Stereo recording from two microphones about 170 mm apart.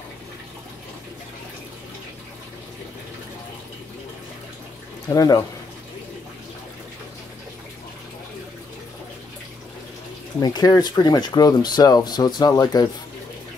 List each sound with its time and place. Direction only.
5.1 s speech: 20° left (ahead or behind)
10.4 s speech: 25° left (ahead or behind)